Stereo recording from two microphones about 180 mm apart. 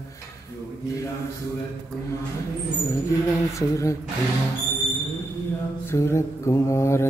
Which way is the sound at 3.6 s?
15° left (ahead or behind).